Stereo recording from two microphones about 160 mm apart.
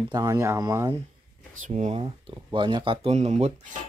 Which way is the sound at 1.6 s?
45° right (ahead or behind).